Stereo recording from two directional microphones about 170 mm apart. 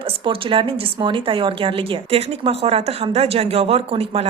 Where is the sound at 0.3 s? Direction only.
30° right (ahead or behind).